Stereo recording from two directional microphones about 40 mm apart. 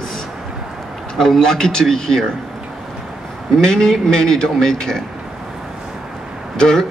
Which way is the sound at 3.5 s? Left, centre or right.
Centre.